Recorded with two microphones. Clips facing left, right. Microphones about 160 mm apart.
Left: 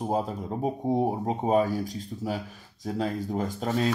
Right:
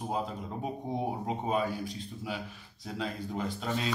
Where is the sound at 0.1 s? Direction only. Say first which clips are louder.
Left 5 dB; 40° left (ahead or behind).